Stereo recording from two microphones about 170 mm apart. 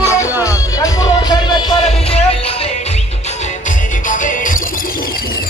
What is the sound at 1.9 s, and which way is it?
Music, 35° left (ahead or behind).